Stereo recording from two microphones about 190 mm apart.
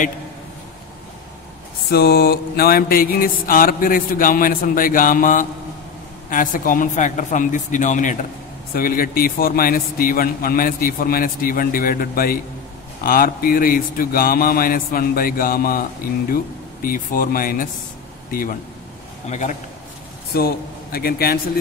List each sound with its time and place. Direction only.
1.9 s a man's voice: 55° left (ahead or behind)
16.8 s a man's voice: 50° left (ahead or behind)
19.2 s a man's voice: 40° left (ahead or behind)
20.3 s a man's voice: 55° left (ahead or behind)